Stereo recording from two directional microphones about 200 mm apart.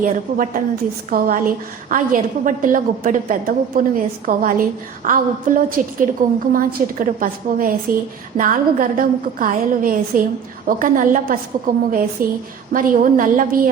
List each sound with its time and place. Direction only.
0.0 s a woman's voice: 45° right (ahead or behind)